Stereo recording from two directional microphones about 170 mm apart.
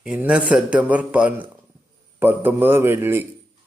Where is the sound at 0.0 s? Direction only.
5° right (ahead or behind).